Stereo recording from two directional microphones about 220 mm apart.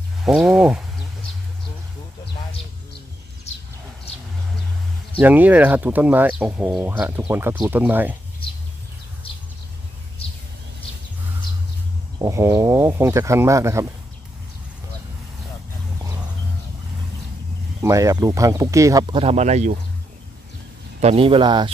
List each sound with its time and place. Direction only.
0.2 s speech: 5° right (ahead or behind)
5.2 s speech: 5° right (ahead or behind)
12.2 s speech: 15° right (ahead or behind)
17.8 s speech: 15° right (ahead or behind); by 19.8 s 30° right (ahead or behind)
21.0 s speech: 25° right (ahead or behind)